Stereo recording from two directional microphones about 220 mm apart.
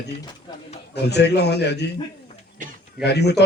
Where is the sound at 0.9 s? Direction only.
50° left (ahead or behind).